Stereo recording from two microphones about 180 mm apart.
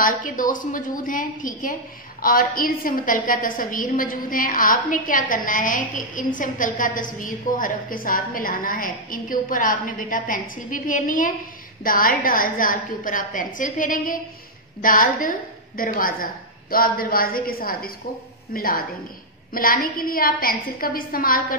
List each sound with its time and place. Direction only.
0.0 s a woman's voice: 50° left (ahead or behind)